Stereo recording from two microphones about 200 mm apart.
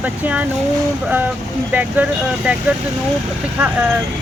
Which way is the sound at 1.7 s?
10° right (ahead or behind).